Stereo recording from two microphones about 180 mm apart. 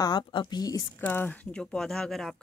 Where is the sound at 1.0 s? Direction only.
10° left (ahead or behind).